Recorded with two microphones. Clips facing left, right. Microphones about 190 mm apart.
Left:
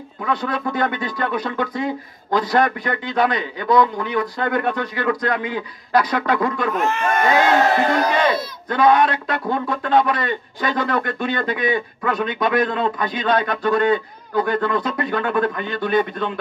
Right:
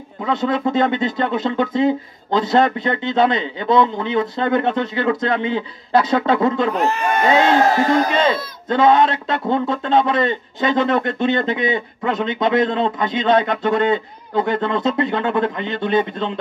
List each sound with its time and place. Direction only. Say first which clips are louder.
0.2 s speech: right 4 dB; 25° right (ahead or behind)
6.8 s speech: right 2 dB; 35° right (ahead or behind)
7.2 s speech: right 2 dB; 25° right (ahead or behind)